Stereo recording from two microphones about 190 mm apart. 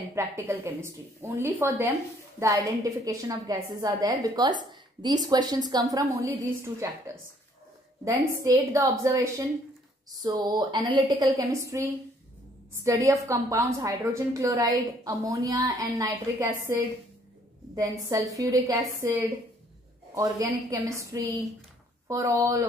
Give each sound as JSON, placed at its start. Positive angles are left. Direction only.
{"t": 0.1, "sound": "a woman's voice", "side_deg": -10}
{"t": 8.0, "sound": "a woman's voice", "side_deg": -15}